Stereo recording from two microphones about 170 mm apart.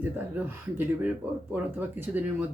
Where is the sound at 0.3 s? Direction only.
10° right (ahead or behind).